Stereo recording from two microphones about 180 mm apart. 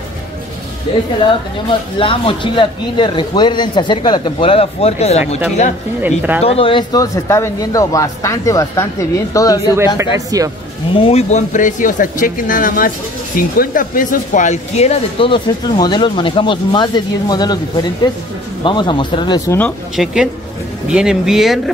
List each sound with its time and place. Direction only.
1.7 s speech: 30° left (ahead or behind)
6.0 s speech: 10° right (ahead or behind)
6.4 s speech: 30° left (ahead or behind)
9.9 s speech: 20° right (ahead or behind)
11.1 s speech: 40° left (ahead or behind); by 19.7 s 15° left (ahead or behind)
20.0 s speech: centre (ahead or behind)